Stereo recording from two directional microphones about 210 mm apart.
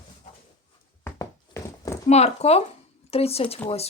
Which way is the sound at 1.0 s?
15° left (ahead or behind).